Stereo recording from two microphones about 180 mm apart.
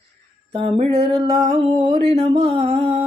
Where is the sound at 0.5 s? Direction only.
35° right (ahead or behind).